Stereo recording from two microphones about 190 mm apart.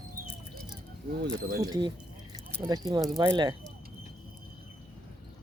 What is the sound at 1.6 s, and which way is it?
Speech, 20° right (ahead or behind).